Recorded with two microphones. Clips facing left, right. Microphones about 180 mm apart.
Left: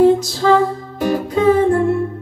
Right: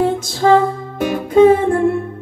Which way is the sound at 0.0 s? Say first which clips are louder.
Left 3 dB; 50° right (ahead or behind).